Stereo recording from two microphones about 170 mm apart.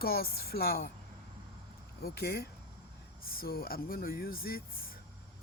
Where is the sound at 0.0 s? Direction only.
65° left (ahead or behind).